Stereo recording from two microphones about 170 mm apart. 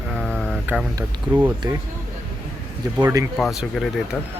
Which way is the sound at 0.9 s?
15° right (ahead or behind).